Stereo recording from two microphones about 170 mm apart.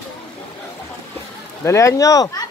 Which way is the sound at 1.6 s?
15° left (ahead or behind).